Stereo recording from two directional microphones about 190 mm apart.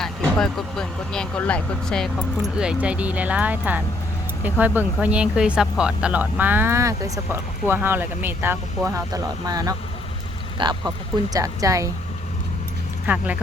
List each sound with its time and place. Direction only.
0.0 s speech: 5° left (ahead or behind); by 11.9 s 15° right (ahead or behind)
13.1 s speech: 10° right (ahead or behind)